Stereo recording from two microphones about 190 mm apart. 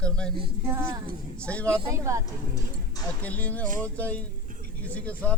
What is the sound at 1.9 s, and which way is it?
Speech, 15° right (ahead or behind).